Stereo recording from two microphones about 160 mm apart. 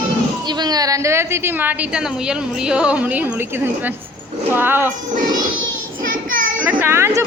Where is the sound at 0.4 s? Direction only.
25° right (ahead or behind).